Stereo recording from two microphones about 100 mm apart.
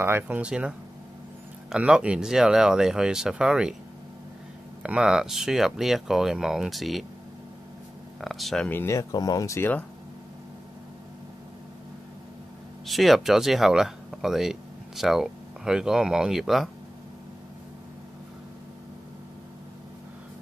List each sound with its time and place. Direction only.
0.0 s speech: 25° right (ahead or behind)
0.4 s speech: 10° right (ahead or behind)
4.8 s speech: 5° right (ahead or behind)
8.2 s speech: centre (ahead or behind)
8.6 s speech: 20° left (ahead or behind)
8.9 s speech: 40° left (ahead or behind)
9.6 s speech: 15° left (ahead or behind)
12.8 s speech: centre (ahead or behind)